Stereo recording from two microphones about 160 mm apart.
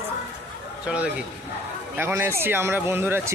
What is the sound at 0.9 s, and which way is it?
Speech, 5° right (ahead or behind).